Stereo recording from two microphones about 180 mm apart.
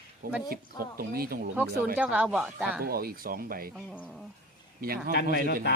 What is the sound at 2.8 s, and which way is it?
Speech, 55° right (ahead or behind).